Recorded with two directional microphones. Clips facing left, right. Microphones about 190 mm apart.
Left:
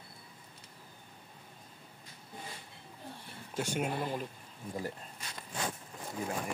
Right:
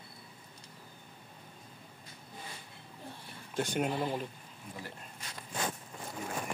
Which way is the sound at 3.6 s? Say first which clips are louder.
Right 2 dB; 5° left (ahead or behind).